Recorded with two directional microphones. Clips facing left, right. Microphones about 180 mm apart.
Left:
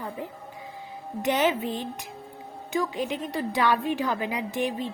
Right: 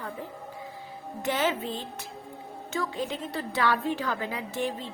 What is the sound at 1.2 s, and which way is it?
A woman's voice, 20° left (ahead or behind).